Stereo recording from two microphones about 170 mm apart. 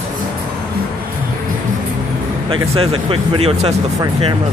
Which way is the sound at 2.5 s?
35° right (ahead or behind).